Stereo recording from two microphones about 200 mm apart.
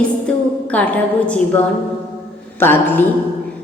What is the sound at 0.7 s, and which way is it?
Speech, 5° left (ahead or behind).